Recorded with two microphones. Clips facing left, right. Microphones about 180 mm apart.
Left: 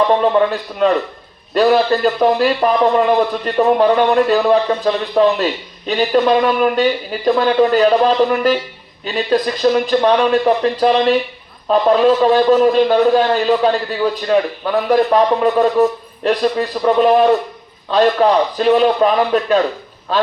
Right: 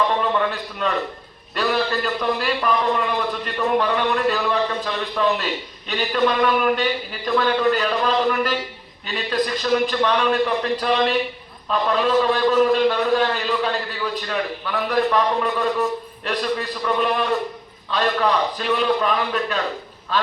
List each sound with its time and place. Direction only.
0.1 s a man's voice: 40° left (ahead or behind)